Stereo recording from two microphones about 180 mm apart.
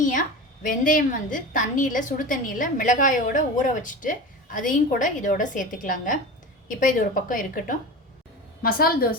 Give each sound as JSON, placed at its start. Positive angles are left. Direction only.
{"t": 0.0, "sound": "a woman's voice", "side_deg": 45}